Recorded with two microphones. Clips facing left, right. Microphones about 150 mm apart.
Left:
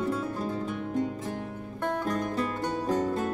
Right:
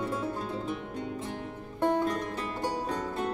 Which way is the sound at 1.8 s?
25° right (ahead or behind).